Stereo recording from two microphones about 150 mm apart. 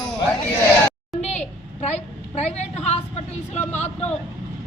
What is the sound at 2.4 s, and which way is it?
A woman's voice, 50° left (ahead or behind).